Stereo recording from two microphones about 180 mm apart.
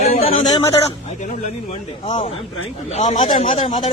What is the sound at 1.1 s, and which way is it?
A man's voice, 40° left (ahead or behind).